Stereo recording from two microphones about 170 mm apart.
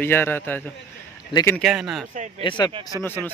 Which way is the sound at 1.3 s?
30° left (ahead or behind).